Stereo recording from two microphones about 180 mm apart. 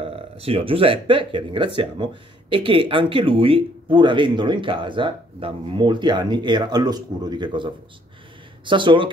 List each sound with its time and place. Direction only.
0.0 s speech: 35° right (ahead or behind)